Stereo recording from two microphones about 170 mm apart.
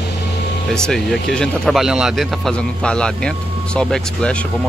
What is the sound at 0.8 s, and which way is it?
Speech, 5° left (ahead or behind).